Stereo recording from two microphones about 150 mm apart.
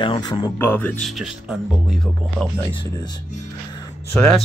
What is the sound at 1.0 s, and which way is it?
Speech, centre (ahead or behind).